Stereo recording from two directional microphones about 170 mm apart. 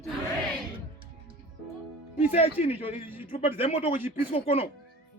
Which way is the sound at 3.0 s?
10° right (ahead or behind).